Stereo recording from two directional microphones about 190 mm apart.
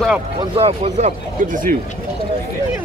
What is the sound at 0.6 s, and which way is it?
Speech, 35° right (ahead or behind).